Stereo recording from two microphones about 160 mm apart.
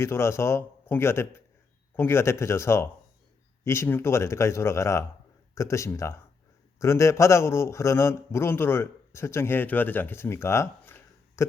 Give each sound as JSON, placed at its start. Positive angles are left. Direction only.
{"t": 0.0, "sound": "a man's voice", "side_deg": 15}